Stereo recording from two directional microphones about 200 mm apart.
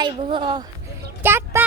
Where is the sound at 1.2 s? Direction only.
10° right (ahead or behind).